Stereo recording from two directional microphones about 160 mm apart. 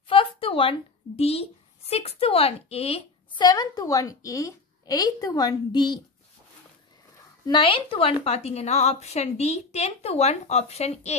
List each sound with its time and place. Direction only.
0.1 s a woman's voice: 35° left (ahead or behind)
3.4 s a woman's voice: 25° left (ahead or behind)
7.4 s a woman's voice: 30° left (ahead or behind)